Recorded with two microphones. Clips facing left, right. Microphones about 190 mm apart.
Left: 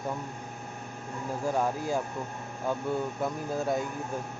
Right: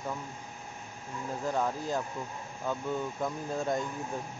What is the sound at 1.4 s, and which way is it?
Speech, 10° left (ahead or behind).